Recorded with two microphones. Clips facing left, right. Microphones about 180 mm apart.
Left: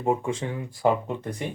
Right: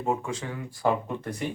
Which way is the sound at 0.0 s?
25° left (ahead or behind).